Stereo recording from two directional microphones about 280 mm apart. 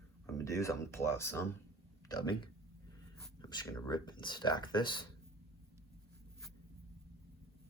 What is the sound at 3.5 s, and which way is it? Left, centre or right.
Speech, centre.